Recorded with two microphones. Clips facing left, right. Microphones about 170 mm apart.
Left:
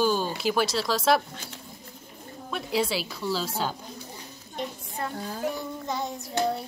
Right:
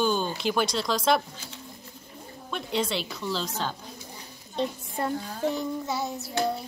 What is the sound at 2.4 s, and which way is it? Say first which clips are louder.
Speech: left 2 dB; 5° left (ahead or behind).